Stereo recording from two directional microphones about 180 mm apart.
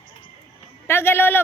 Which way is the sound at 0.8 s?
10° left (ahead or behind).